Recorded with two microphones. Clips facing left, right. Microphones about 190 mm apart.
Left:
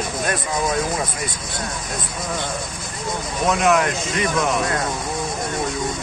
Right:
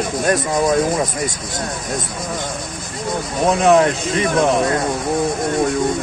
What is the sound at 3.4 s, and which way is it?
Speech, 35° right (ahead or behind).